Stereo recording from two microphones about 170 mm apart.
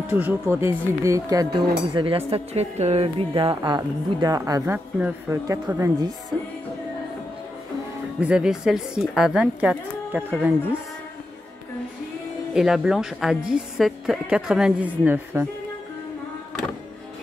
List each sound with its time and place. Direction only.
0.0 s speech: 10° right (ahead or behind)
2.0 s a woman's voice: 30° right (ahead or behind)
8.2 s a woman's voice: 5° right (ahead or behind)
12.5 s a woman's voice: centre (ahead or behind)